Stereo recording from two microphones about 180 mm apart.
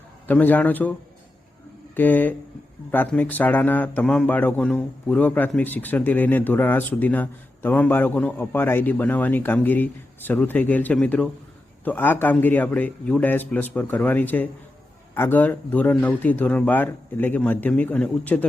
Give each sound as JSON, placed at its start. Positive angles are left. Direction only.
{"t": 0.3, "sound": "a man's voice", "side_deg": 10}
{"t": 2.0, "sound": "a man's voice", "side_deg": 10}